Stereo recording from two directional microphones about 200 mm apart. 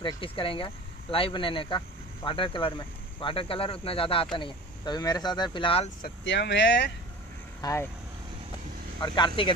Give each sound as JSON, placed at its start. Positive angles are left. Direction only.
{"t": 0.0, "sound": "speech", "side_deg": 25}
{"t": 6.0, "sound": "speech", "side_deg": 60}
{"t": 7.6, "sound": "speech", "side_deg": 20}
{"t": 9.0, "sound": "speech", "side_deg": 20}